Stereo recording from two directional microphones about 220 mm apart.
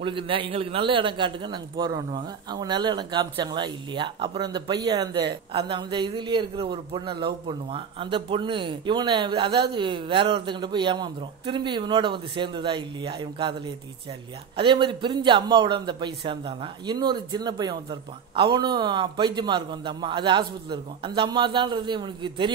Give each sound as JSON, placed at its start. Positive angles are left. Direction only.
{"t": 0.0, "sound": "a man's voice", "side_deg": -25}
{"t": 14.6, "sound": "a man's voice", "side_deg": -20}